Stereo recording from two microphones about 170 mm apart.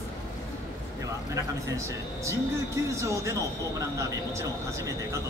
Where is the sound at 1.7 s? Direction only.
15° right (ahead or behind).